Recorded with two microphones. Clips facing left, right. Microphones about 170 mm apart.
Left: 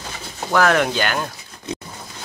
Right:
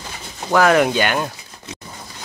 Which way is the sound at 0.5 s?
5° right (ahead or behind).